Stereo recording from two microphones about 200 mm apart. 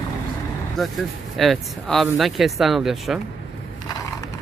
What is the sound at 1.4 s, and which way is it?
Speech, centre (ahead or behind).